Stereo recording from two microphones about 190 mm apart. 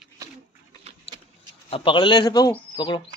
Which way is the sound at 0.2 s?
15° right (ahead or behind).